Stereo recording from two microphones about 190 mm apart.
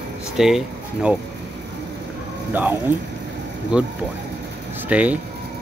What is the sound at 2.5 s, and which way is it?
Speech, 10° right (ahead or behind).